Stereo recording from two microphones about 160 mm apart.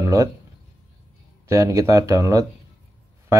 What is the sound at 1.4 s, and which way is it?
Speech, 20° right (ahead or behind).